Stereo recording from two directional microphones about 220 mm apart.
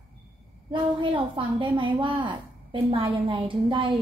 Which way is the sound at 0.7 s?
20° right (ahead or behind).